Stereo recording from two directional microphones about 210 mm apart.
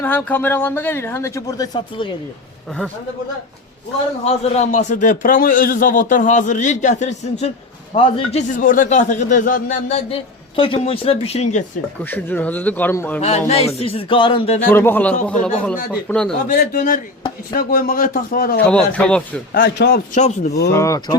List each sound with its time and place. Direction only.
0.0 s speech: 10° left (ahead or behind)
4.2 s speech: 30° left (ahead or behind)
12.1 s speech: 10° left (ahead or behind)
13.5 s speech: 30° left (ahead or behind)
14.7 s speech: 10° left (ahead or behind)
16.5 s speech: 40° left (ahead or behind)
18.6 s speech: 5° left (ahead or behind)
19.5 s speech: 55° left (ahead or behind)
20.1 s speech: 35° left (ahead or behind)
20.7 s speech: 15° left (ahead or behind)